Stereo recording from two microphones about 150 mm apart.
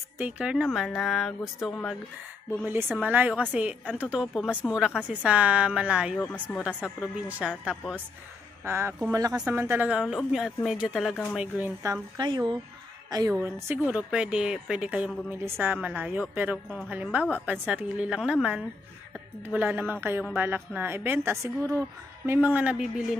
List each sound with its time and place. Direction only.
0.2 s a woman's voice: 5° right (ahead or behind)
2.6 s a woman's voice: 15° right (ahead or behind)
6.1 s speech: 5° left (ahead or behind)
6.8 s a woman's voice: 10° right (ahead or behind)
8.6 s a woman's voice: 15° right (ahead or behind); by 11.2 s centre (ahead or behind)
11.3 s speech: 10° right (ahead or behind); by 12.5 s 30° right (ahead or behind)
13.4 s a woman's voice: 15° right (ahead or behind)